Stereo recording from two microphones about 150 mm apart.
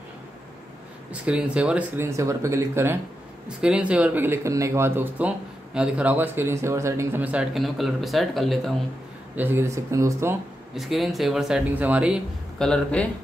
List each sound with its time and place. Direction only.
1.1 s speech: 5° right (ahead or behind)
9.4 s speech: 15° right (ahead or behind)
10.7 s speech: centre (ahead or behind)
12.5 s speech: 5° left (ahead or behind)